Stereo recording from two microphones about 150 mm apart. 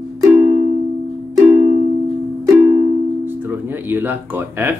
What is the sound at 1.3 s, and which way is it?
Music, 15° right (ahead or behind).